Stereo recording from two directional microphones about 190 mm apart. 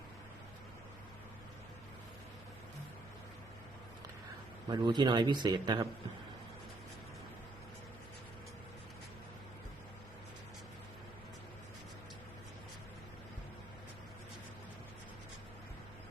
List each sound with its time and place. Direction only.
4.7 s speech: 25° right (ahead or behind)